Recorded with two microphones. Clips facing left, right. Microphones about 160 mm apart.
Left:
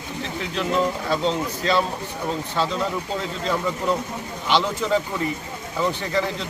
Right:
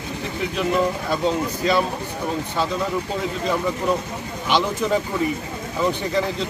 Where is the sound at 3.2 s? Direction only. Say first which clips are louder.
Right 2 dB; 15° right (ahead or behind).